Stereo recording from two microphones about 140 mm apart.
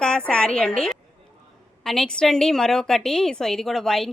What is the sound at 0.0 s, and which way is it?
Speech, 5° left (ahead or behind).